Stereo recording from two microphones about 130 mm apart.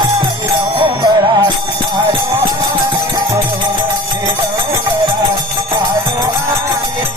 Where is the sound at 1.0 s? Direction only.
30° right (ahead or behind).